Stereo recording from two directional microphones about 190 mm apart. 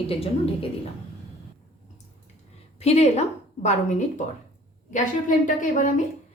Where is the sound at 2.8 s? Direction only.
35° left (ahead or behind).